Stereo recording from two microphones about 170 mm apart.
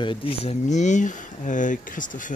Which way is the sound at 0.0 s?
30° left (ahead or behind).